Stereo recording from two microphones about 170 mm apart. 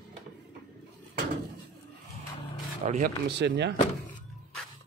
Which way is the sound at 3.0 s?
90° right.